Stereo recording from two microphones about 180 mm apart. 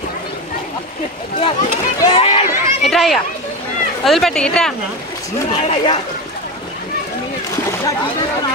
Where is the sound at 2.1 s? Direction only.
30° left (ahead or behind).